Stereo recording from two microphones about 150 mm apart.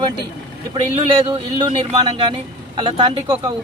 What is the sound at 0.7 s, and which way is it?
Speech, 40° right (ahead or behind).